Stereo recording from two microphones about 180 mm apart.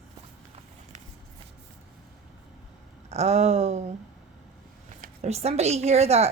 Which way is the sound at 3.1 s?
35° right (ahead or behind).